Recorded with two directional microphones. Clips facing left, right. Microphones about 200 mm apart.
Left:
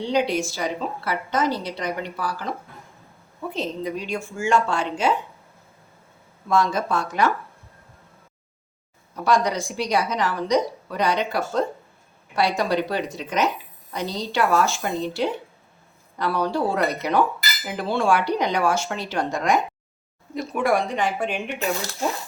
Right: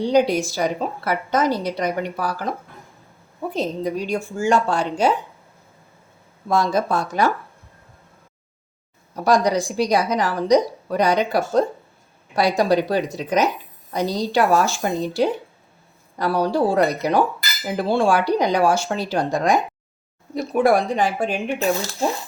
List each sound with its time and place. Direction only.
0.0 s a woman's voice: 40° right (ahead or behind)
3.5 s a woman's voice: 40° right (ahead or behind)
6.5 s a woman's voice: 35° right (ahead or behind)
9.1 s a woman's voice: 40° right (ahead or behind)